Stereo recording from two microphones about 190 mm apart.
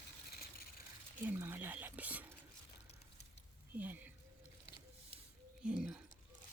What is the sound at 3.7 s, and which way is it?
Speech, 10° right (ahead or behind).